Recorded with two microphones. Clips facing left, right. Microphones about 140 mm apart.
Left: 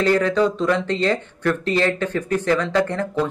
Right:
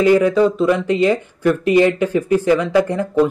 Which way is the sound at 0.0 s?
10° right (ahead or behind).